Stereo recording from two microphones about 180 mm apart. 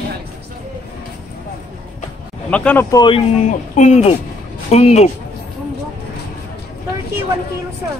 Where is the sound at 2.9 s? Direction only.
25° left (ahead or behind).